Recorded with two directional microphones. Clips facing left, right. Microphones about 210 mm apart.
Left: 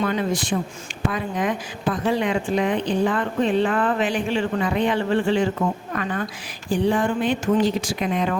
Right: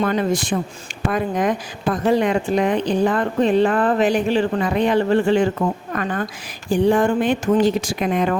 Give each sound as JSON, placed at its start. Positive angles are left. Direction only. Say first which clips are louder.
{"t": 0.0, "sound": "a woman's voice", "louder": "right 3 dB", "side_deg": -45}